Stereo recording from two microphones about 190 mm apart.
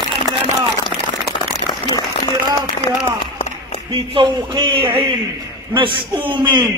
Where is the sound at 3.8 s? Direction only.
25° right (ahead or behind).